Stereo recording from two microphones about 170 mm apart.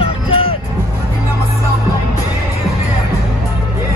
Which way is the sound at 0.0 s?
35° left (ahead or behind).